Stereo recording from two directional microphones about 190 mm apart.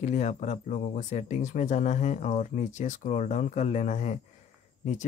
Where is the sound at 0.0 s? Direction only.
35° left (ahead or behind).